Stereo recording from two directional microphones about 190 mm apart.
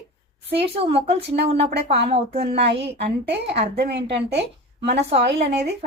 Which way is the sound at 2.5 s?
65° right (ahead or behind).